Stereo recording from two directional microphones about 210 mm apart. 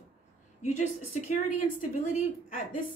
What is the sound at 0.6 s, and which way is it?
Speech, 35° left (ahead or behind).